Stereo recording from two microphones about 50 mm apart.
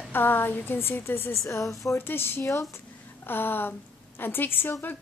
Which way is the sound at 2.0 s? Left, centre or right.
Left.